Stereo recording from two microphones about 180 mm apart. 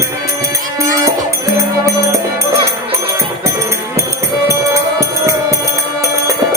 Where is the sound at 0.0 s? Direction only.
20° right (ahead or behind).